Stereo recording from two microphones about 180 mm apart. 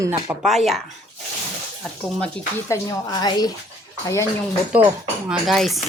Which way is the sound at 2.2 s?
20° left (ahead or behind).